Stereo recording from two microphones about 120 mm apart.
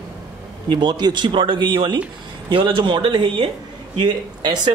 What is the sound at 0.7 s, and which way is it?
Speech, 35° right (ahead or behind).